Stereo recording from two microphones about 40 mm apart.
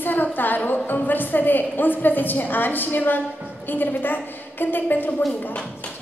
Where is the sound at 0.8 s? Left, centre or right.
Left.